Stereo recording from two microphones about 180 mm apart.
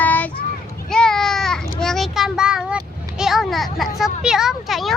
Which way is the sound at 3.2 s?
Centre (ahead or behind).